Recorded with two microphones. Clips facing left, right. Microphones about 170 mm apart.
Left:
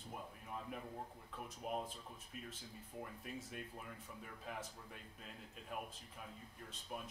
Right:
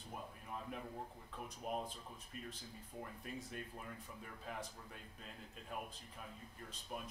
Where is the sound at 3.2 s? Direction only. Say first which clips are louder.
Right 2 dB; centre (ahead or behind).